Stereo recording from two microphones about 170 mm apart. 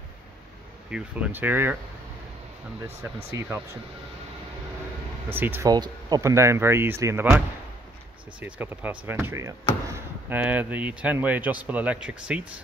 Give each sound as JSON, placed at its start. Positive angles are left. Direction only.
{"t": 0.8, "sound": "speech", "side_deg": -5}
{"t": 3.3, "sound": "speech", "side_deg": -15}
{"t": 5.3, "sound": "speech", "side_deg": -10}